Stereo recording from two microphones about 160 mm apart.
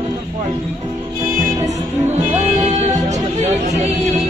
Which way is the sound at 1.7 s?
45° right (ahead or behind).